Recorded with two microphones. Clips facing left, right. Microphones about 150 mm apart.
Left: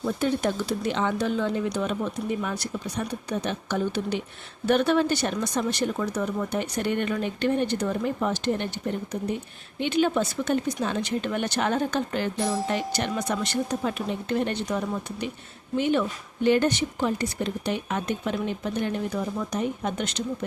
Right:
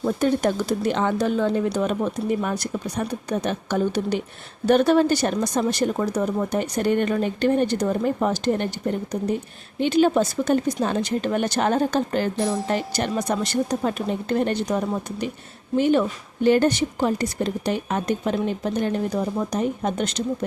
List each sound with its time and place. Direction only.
0.0 s a woman's voice: 45° right (ahead or behind)
9.8 s a woman's voice: 35° right (ahead or behind)